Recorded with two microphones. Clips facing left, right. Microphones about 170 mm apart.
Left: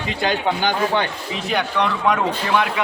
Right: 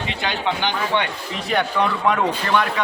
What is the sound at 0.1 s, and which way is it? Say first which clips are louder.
Speech: left 5 dB; 45° left (ahead or behind).